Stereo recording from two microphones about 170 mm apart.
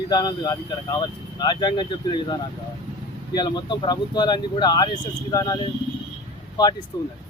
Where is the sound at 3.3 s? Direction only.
25° left (ahead or behind).